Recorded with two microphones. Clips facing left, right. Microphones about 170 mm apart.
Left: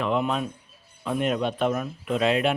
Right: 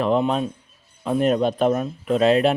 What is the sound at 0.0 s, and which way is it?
Speech, 35° right (ahead or behind).